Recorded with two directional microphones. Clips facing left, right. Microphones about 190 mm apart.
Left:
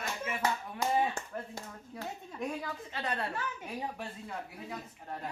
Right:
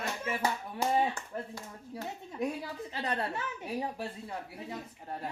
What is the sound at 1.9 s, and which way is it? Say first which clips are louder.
A woman's voice: right 3 dB; 35° right (ahead or behind).